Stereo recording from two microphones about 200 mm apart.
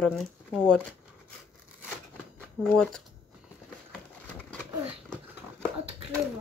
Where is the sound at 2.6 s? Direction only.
5° left (ahead or behind).